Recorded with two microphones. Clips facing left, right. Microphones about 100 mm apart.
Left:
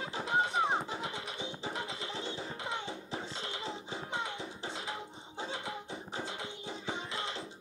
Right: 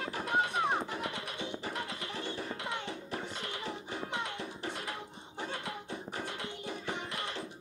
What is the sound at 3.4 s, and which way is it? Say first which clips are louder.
Music: right 1 dB; 25° left (ahead or behind).